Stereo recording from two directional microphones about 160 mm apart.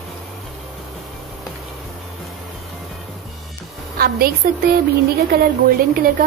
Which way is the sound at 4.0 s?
70° right (ahead or behind).